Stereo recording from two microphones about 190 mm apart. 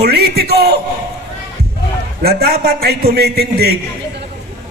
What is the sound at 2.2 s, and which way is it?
A man's voice, 55° right (ahead or behind).